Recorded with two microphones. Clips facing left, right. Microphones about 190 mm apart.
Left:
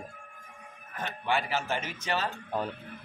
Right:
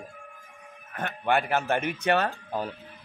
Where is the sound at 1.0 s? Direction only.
55° right (ahead or behind).